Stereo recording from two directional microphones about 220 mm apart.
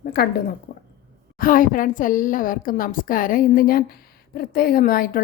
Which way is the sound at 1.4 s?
40° left (ahead or behind).